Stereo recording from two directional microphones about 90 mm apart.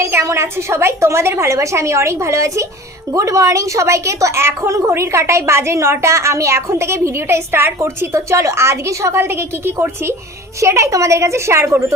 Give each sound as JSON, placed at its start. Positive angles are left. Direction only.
{"t": 0.0, "sound": "a woman's voice", "side_deg": -30}